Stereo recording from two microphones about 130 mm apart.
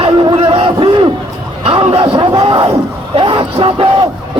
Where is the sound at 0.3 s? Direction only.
45° right (ahead or behind).